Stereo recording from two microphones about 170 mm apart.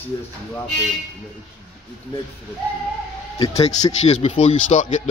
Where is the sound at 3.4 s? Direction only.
35° left (ahead or behind).